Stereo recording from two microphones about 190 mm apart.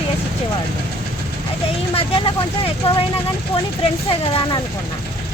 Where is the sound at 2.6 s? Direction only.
30° left (ahead or behind).